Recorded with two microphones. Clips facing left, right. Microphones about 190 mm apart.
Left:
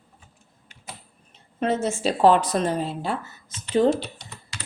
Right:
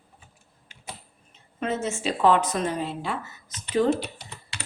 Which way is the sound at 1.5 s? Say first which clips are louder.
Left 4 dB; 35° left (ahead or behind).